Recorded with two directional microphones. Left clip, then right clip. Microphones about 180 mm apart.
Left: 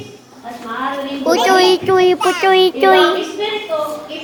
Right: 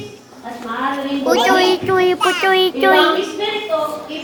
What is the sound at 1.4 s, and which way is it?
Child singing, 35° left (ahead or behind).